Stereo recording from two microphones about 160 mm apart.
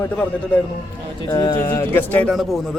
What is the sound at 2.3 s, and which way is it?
Speech, centre (ahead or behind).